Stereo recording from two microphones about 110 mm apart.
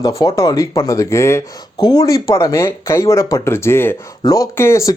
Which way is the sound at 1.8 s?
35° left (ahead or behind).